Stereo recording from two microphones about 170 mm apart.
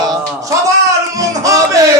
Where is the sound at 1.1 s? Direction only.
20° right (ahead or behind).